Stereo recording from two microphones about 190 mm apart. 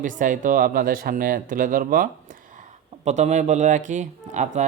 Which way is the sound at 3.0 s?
35° right (ahead or behind).